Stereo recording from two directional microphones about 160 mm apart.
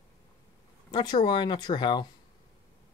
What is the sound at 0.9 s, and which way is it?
Speech, 30° left (ahead or behind).